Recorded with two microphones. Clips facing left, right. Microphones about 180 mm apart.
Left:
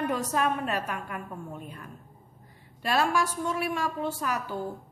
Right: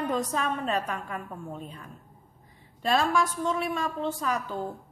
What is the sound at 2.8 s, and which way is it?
A woman's voice, 10° left (ahead or behind).